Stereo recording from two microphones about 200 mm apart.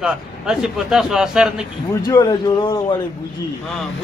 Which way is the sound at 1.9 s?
15° left (ahead or behind).